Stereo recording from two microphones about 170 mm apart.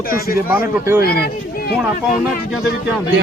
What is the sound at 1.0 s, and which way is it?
Speech, 65° left (ahead or behind).